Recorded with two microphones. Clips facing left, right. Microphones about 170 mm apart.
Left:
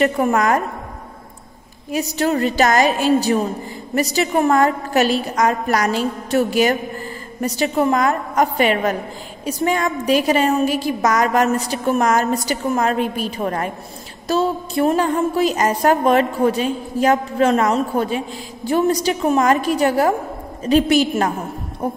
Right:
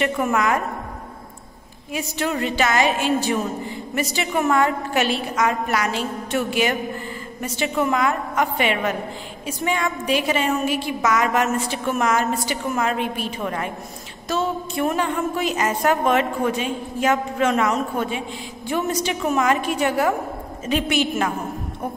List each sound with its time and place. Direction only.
0.0 s a woman's voice: 40° left (ahead or behind)
1.9 s a woman's voice: 40° left (ahead or behind)